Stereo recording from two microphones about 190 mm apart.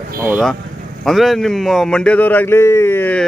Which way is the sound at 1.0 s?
Centre (ahead or behind).